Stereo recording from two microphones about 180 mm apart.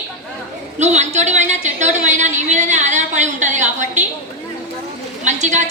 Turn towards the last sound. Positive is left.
turn(degrees=-40)  # may be behind; listen again after turning